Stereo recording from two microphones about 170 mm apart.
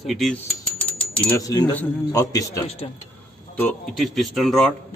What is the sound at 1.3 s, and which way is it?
A man's voice, 20° left (ahead or behind).